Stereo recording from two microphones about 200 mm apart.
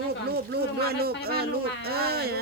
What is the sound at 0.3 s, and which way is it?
Speech, 50° right (ahead or behind).